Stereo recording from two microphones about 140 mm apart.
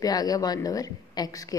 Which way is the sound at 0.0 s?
25° left (ahead or behind).